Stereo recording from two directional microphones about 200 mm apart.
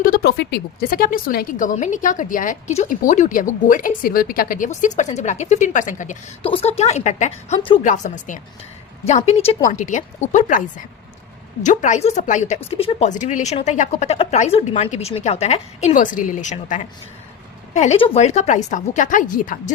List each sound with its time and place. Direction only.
0.0 s a woman's voice: 50° left (ahead or behind)
6.4 s a woman's voice: 30° left (ahead or behind)